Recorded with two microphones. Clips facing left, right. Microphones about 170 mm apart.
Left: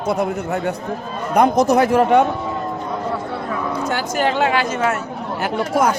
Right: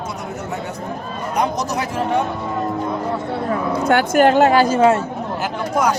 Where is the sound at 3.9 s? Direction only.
55° right (ahead or behind); by 5.0 s 30° right (ahead or behind).